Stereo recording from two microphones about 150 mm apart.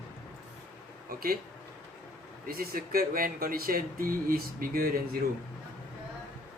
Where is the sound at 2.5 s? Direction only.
80° right.